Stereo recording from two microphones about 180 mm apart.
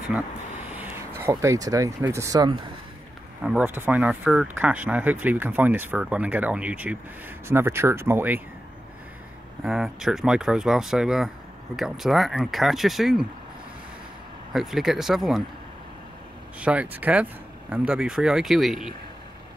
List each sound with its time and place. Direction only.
0.7 s speech: 10° right (ahead or behind)
3.4 s speech: 10° right (ahead or behind)
9.6 s speech: 5° right (ahead or behind)
14.5 s speech: centre (ahead or behind)
16.5 s speech: 5° right (ahead or behind)